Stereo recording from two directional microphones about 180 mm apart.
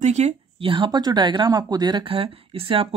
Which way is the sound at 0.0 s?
40° right (ahead or behind).